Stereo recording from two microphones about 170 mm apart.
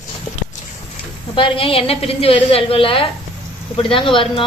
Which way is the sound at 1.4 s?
35° left (ahead or behind).